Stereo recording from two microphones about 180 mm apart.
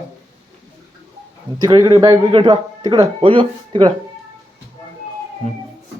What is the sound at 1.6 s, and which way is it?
Speech, 25° right (ahead or behind).